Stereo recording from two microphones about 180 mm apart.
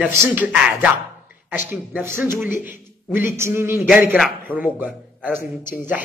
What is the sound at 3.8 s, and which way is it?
Speech, 5° right (ahead or behind).